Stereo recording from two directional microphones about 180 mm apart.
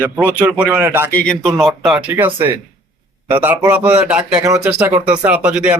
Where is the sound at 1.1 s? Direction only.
5° left (ahead or behind).